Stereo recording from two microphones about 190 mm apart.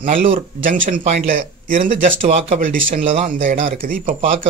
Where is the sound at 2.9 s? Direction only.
30° right (ahead or behind).